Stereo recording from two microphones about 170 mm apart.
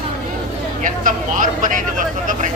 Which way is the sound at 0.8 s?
50° right (ahead or behind).